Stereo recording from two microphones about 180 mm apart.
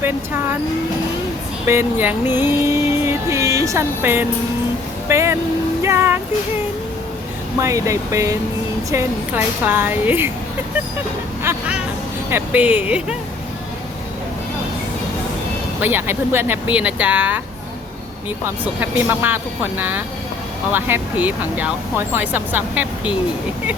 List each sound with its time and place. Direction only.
1.6 s music: 15° right (ahead or behind)
5.0 s speech: 15° right (ahead or behind)
7.6 s speech: 15° right (ahead or behind)
11.5 s speech: 10° right (ahead or behind)
15.8 s speech: 10° right (ahead or behind)
18.6 s speech: 10° right (ahead or behind)